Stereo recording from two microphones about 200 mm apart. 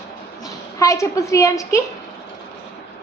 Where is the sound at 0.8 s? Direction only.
15° left (ahead or behind).